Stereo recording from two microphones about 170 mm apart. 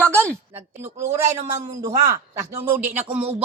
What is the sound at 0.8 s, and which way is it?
Speech, 15° right (ahead or behind).